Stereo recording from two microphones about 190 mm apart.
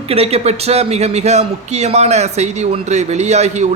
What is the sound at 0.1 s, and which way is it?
A man's voice, 30° right (ahead or behind).